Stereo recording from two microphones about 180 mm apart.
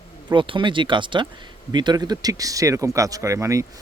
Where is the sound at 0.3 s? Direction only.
25° right (ahead or behind).